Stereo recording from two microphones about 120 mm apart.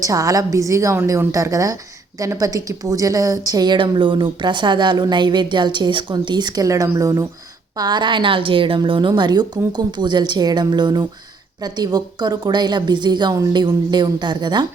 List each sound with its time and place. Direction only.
0.0 s a woman's voice: 30° right (ahead or behind)
13.3 s a woman's voice: 25° right (ahead or behind)
13.6 s a woman's voice: 40° right (ahead or behind)